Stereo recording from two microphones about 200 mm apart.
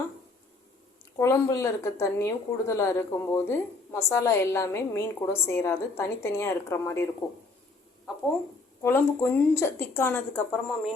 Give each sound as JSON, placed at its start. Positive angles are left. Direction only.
{"t": 1.2, "sound": "speech", "side_deg": 15}
{"t": 8.8, "sound": "speech", "side_deg": 10}